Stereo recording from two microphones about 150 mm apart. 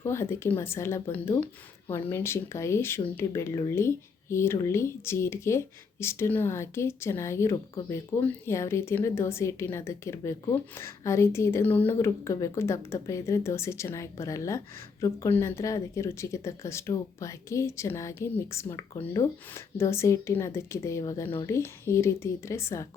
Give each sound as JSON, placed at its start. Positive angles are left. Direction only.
{"t": 0.0, "sound": "speech", "side_deg": 15}